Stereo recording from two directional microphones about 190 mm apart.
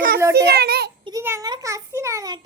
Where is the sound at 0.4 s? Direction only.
60° right (ahead or behind).